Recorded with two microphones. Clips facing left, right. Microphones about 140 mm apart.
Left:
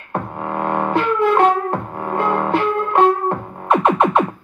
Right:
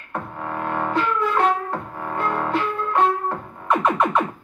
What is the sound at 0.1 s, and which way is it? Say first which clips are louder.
Music: left 5 dB; 75° left (ahead or behind).